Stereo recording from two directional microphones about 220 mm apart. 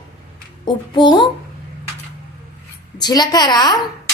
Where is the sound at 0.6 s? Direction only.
20° left (ahead or behind).